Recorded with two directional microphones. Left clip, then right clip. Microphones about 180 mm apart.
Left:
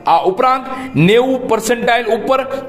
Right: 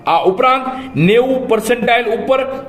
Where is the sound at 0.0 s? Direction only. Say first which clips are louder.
Even; 35° left (ahead or behind).